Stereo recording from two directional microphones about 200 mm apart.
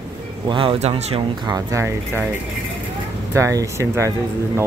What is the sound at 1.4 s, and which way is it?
Speech, 15° right (ahead or behind).